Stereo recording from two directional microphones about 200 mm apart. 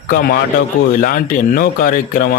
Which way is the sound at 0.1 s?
50° left (ahead or behind).